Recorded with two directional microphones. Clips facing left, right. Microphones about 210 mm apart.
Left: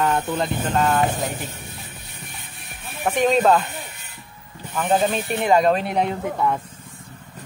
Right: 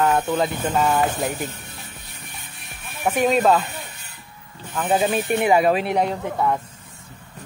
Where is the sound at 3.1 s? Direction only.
5° right (ahead or behind).